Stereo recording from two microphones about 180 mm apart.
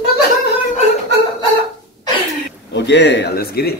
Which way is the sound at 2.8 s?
75° left (ahead or behind).